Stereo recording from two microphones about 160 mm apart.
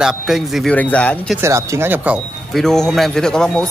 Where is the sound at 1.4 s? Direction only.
15° right (ahead or behind).